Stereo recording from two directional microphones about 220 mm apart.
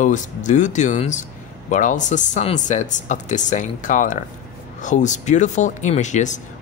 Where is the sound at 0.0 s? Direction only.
35° left (ahead or behind).